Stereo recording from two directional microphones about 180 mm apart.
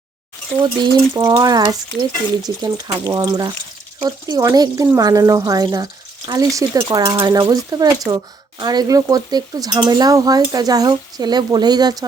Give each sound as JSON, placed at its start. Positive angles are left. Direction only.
{"t": 0.6, "sound": "speech", "side_deg": -20}